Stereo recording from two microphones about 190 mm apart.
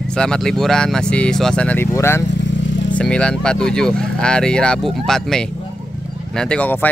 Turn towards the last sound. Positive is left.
turn(degrees=10)  # may be behind; listen again after turning